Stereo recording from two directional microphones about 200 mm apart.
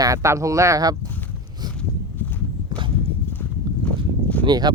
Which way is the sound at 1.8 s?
10° left (ahead or behind).